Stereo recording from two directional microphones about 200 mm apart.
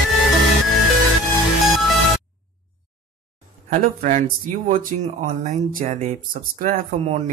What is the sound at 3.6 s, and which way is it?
Speech, 40° right (ahead or behind).